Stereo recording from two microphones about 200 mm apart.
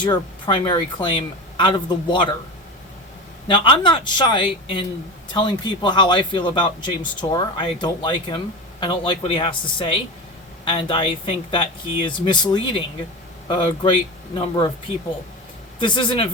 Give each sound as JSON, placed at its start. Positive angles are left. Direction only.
{"t": 0.0, "sound": "speech", "side_deg": 25}
{"t": 3.4, "sound": "speech", "side_deg": 25}
{"t": 15.8, "sound": "speech", "side_deg": 25}